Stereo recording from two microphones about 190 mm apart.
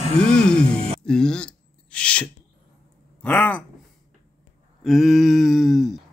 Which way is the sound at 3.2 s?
10° left (ahead or behind).